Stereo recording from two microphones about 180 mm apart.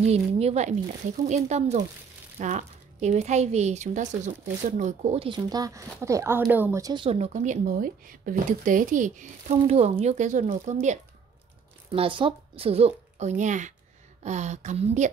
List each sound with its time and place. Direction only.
0.0 s speech: 35° right (ahead or behind)
11.9 s speech: 30° right (ahead or behind)